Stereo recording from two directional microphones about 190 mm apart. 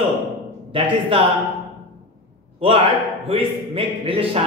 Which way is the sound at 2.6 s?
30° right (ahead or behind).